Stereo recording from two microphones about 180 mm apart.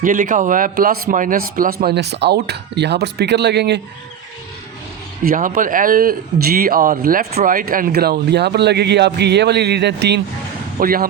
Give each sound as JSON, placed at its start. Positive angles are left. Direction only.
{"t": 0.0, "sound": "speech", "side_deg": -50}
{"t": 5.2, "sound": "speech", "side_deg": -50}
{"t": 10.8, "sound": "speech", "side_deg": -55}